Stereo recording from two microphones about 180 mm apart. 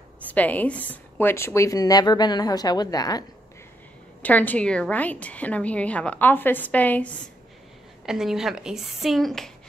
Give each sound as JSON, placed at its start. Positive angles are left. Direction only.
{"t": 0.3, "sound": "a woman's voice", "side_deg": 10}
{"t": 4.2, "sound": "a woman's voice", "side_deg": 10}
{"t": 8.0, "sound": "speech", "side_deg": -5}